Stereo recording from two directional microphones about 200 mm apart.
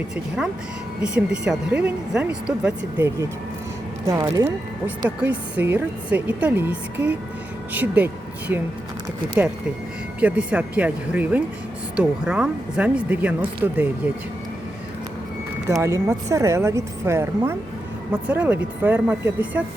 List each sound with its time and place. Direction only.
1.0 s a woman's voice: 5° right (ahead or behind)
5.0 s a woman's voice: 5° right (ahead or behind)
15.7 s a woman's voice: 15° right (ahead or behind)